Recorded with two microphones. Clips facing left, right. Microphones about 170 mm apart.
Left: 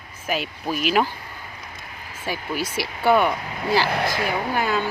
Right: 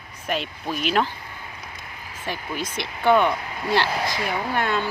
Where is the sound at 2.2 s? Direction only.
5° left (ahead or behind).